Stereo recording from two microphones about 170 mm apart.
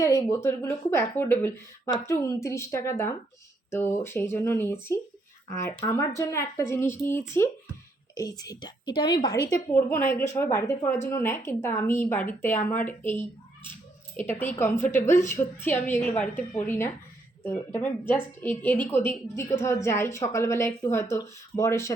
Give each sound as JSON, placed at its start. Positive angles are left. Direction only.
{"t": 0.0, "sound": "a woman's voice", "side_deg": 20}